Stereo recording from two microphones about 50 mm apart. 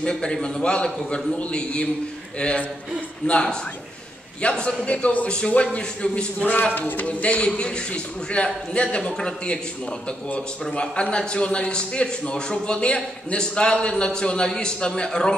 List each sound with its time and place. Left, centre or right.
0.0 s a man's voice: centre
6.7 s a man's voice: left; by 9.6 s centre
10.7 s a man's voice: left